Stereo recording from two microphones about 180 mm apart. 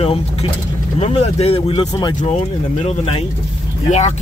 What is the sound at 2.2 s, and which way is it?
Speech, 35° left (ahead or behind).